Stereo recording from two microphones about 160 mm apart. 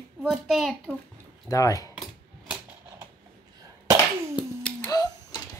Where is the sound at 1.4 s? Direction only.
20° left (ahead or behind).